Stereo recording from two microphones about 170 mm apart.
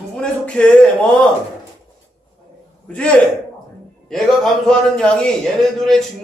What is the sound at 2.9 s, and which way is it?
Speech, 10° left (ahead or behind).